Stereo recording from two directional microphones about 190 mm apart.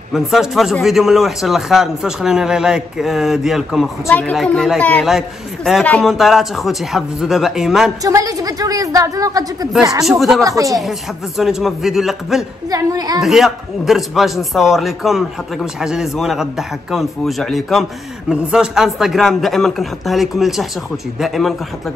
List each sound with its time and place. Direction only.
0.1 s a man's voice: centre (ahead or behind)
8.0 s a woman's voice: 20° right (ahead or behind)
10.0 s a man's voice: centre (ahead or behind)
10.4 s speech: 15° right (ahead or behind)
10.8 s a man's voice: centre (ahead or behind)
12.6 s a woman's voice: 20° right (ahead or behind)
13.2 s a man's voice: centre (ahead or behind)